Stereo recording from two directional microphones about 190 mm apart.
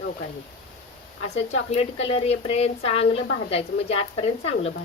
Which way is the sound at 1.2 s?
35° left (ahead or behind).